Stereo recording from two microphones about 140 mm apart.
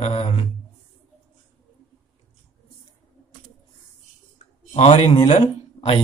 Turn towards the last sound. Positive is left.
turn(degrees=45)  # may be behind; listen again after turning